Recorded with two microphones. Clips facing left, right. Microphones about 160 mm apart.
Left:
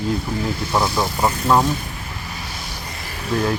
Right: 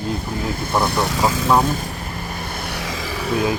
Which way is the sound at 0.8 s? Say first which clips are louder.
Right 1 dB; 65° right (ahead or behind).